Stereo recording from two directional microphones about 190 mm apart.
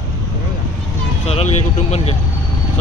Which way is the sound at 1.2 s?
35° left (ahead or behind).